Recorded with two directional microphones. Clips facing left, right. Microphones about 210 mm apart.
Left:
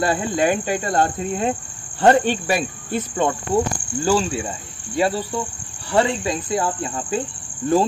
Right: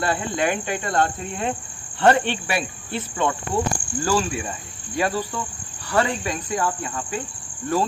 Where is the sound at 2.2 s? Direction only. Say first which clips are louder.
Left 5 dB; 40° left (ahead or behind).